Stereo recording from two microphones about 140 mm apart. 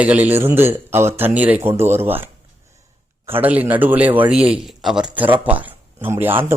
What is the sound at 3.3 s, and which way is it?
Speech, 15° right (ahead or behind).